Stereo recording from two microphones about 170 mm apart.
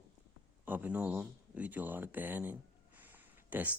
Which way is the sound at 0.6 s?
10° right (ahead or behind).